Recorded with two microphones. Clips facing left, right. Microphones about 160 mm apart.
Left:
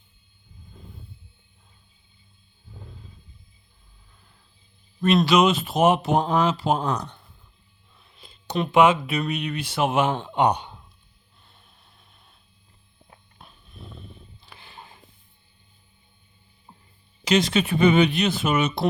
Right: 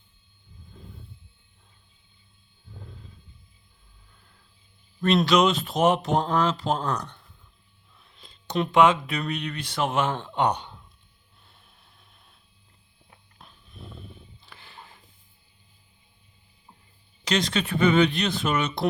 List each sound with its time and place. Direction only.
4.9 s speech: 5° left (ahead or behind)
11.4 s a sound: centre (ahead or behind)
13.4 s dog: 5° left (ahead or behind)
14.4 s music: 15° left (ahead or behind)
17.2 s speech: 10° left (ahead or behind)